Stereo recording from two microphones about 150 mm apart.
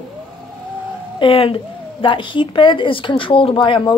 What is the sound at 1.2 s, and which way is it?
A woman's voice, 35° left (ahead or behind).